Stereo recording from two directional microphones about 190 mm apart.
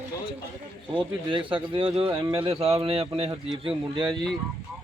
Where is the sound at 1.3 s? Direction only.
25° right (ahead or behind).